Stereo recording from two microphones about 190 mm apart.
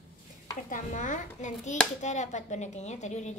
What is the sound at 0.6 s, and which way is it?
A child's voice, 40° left (ahead or behind).